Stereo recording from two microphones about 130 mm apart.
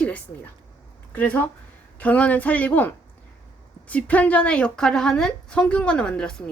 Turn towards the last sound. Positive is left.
turn(degrees=10)  # may be behind; listen again after turning